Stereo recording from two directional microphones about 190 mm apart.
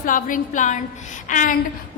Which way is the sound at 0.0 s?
45° left (ahead or behind).